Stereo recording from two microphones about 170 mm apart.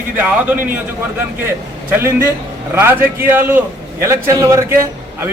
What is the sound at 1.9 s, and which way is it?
Speech, 10° right (ahead or behind).